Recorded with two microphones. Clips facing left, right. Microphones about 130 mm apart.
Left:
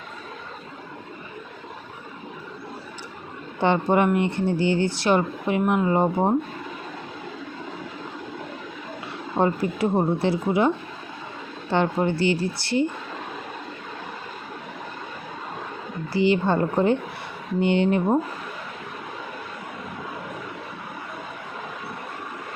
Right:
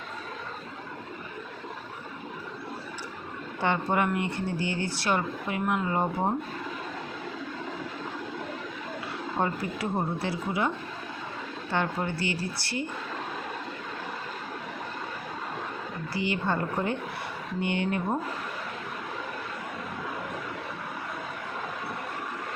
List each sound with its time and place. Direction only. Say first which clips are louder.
3.6 s speech: left 6 dB; 25° left (ahead or behind)
9.4 s speech: left 8 dB; 20° left (ahead or behind)
11.7 s speech: left 7 dB; 25° left (ahead or behind)
16.1 s speech: left 9 dB; 25° left (ahead or behind)